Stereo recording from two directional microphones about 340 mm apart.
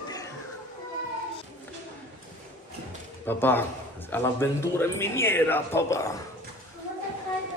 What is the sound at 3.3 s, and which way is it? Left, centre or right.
A man's voice, centre.